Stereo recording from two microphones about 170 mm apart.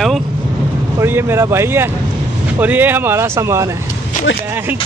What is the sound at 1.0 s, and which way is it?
Speech, 15° right (ahead or behind).